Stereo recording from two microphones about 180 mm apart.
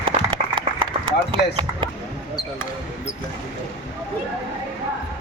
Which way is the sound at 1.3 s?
25° right (ahead or behind).